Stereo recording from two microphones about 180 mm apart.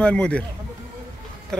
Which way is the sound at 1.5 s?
5° left (ahead or behind).